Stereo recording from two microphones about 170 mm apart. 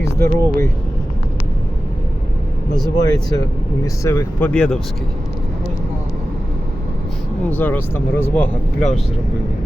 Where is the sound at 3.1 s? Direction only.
25° left (ahead or behind); by 4.8 s 5° left (ahead or behind).